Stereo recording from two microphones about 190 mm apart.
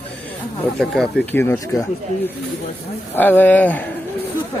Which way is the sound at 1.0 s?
10° left (ahead or behind).